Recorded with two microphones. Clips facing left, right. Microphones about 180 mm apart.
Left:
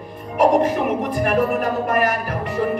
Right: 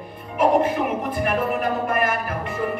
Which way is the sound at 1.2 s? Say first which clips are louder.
Left 3 dB; 40° left (ahead or behind).